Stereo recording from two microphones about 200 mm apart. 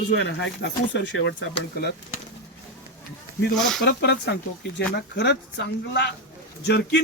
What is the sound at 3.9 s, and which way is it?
Speech, 60° left (ahead or behind).